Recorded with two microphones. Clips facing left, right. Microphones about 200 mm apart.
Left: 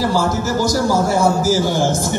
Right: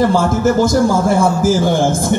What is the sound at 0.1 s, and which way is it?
A man's voice, 55° right (ahead or behind).